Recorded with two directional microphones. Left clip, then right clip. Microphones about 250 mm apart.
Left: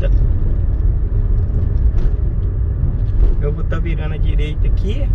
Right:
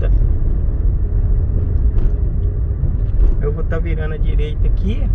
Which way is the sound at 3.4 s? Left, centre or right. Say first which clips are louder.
Right 2 dB; centre.